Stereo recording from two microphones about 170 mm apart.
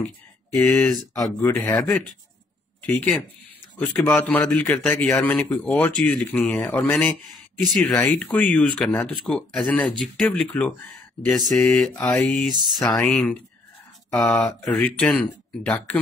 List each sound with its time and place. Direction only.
0.6 s mantra: centre (ahead or behind)
1.1 s speech: 15° left (ahead or behind)
1.8 s mantra: 5° left (ahead or behind)
2.8 s speech: 10° left (ahead or behind)
9.2 s mantra: centre (ahead or behind)